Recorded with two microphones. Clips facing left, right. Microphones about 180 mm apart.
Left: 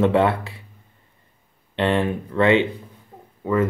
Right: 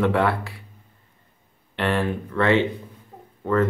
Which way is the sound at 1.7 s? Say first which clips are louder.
Left 3 dB; 20° left (ahead or behind).